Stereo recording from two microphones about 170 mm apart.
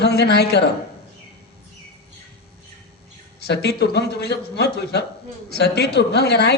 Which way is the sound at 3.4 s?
75° left (ahead or behind).